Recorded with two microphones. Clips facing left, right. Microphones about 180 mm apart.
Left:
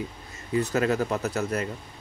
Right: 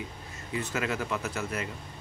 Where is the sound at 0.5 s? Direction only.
40° left (ahead or behind).